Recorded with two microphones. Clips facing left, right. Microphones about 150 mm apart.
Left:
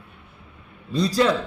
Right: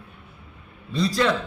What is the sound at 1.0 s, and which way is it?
Speech, 35° left (ahead or behind).